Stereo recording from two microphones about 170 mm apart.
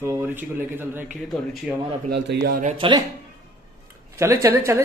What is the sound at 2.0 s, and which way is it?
Speech, 80° right.